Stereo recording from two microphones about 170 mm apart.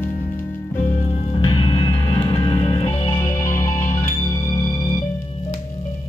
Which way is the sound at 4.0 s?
25° left (ahead or behind).